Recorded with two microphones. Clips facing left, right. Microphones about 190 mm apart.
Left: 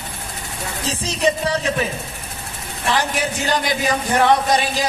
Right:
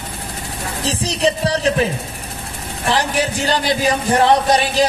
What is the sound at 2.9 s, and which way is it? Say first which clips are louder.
A man's voice: right 2 dB; 35° right (ahead or behind).